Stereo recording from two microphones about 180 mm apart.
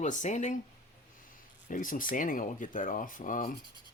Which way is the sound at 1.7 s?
50° left (ahead or behind).